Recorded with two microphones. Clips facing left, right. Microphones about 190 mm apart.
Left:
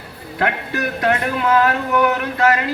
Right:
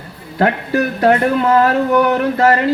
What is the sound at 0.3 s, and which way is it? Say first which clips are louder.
Speech: right 6 dB; 35° right (ahead or behind).